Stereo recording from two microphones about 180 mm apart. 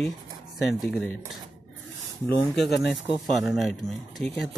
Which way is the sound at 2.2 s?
Centre (ahead or behind).